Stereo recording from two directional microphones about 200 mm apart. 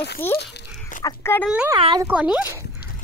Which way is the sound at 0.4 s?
40° left (ahead or behind).